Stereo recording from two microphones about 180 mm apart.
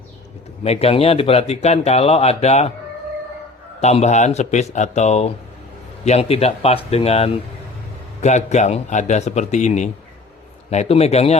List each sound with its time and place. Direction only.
0.6 s speech: 35° left (ahead or behind)
3.8 s speech: 35° left (ahead or behind)